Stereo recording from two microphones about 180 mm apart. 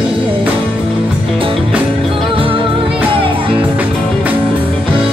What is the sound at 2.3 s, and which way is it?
Music, 30° right (ahead or behind).